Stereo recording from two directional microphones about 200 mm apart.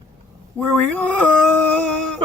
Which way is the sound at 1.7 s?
5° left (ahead or behind).